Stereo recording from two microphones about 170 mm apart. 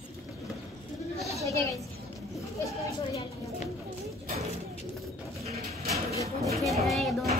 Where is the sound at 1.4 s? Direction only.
20° left (ahead or behind).